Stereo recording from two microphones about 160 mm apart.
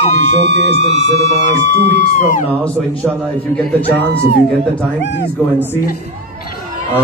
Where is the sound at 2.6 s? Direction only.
5° left (ahead or behind).